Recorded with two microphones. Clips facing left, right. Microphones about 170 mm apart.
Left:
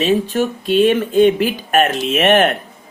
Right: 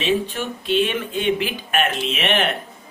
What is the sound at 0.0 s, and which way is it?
Speech, 40° left (ahead or behind).